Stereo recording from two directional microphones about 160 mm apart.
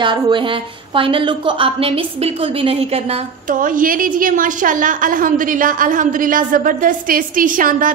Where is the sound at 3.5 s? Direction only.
60° right (ahead or behind).